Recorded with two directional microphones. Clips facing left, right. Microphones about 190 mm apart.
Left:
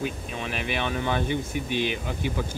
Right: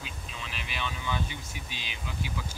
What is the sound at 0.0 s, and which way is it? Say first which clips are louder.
Speech: left 12 dB; 55° left (ahead or behind).